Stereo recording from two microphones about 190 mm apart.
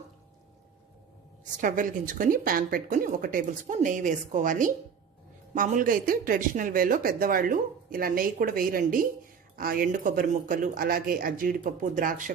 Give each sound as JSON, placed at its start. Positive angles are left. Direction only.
{"t": 1.6, "sound": "speech", "side_deg": -45}